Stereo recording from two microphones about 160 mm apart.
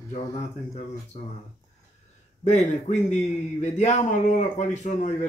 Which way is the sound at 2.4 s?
45° left (ahead or behind).